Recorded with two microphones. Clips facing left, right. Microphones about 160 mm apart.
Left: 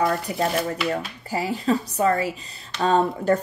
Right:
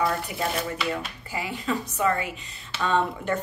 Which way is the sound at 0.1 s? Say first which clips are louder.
Left 5 dB; 45° left (ahead or behind).